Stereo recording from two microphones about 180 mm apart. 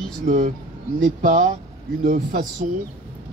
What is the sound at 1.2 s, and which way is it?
Speech, 50° right (ahead or behind).